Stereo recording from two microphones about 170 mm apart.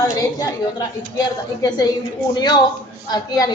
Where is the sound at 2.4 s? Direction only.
25° left (ahead or behind).